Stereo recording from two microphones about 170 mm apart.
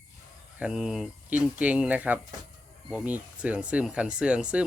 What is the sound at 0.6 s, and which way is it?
Speech, 5° right (ahead or behind).